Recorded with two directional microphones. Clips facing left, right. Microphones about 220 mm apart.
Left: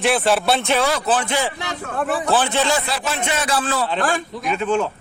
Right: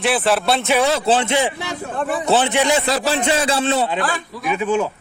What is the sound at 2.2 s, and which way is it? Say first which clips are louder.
Speech: right 4 dB; 20° right (ahead or behind).